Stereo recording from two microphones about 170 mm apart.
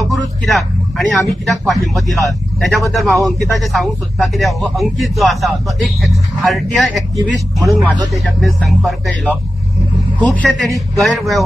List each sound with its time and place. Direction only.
0.1 s vehicle: centre (ahead or behind)
1.5 s speech: centre (ahead or behind)
10.3 s speech: centre (ahead or behind)